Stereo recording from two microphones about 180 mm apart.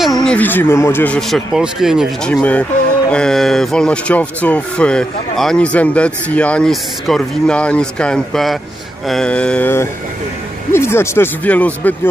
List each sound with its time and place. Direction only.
0.0 s speech: centre (ahead or behind)